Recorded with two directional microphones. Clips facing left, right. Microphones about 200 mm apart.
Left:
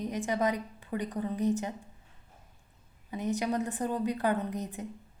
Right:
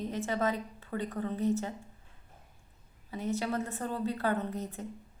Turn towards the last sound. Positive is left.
turn(degrees=15)  # may be behind; listen again after turning